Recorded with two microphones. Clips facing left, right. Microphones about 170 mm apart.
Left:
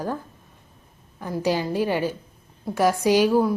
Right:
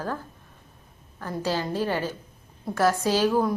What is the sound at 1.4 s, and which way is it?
A woman's voice, 15° left (ahead or behind).